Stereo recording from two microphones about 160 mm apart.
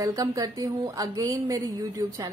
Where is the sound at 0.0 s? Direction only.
20° right (ahead or behind).